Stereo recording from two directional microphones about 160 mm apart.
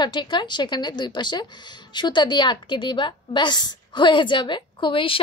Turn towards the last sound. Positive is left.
turn(degrees=35)  # may be behind; listen again after turning